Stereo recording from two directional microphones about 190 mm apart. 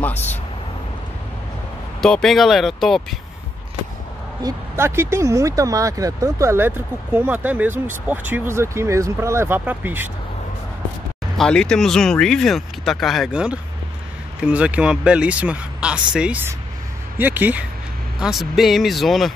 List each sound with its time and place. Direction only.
2.0 s speech: centre (ahead or behind)
4.4 s speech: 15° right (ahead or behind)
11.3 s speech: 5° left (ahead or behind)